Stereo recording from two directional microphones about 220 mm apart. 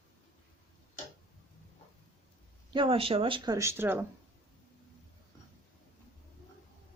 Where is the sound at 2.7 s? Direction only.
25° right (ahead or behind).